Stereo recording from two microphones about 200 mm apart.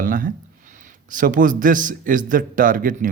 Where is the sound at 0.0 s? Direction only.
45° right (ahead or behind).